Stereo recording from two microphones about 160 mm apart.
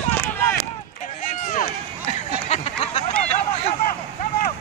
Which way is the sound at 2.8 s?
40° left (ahead or behind).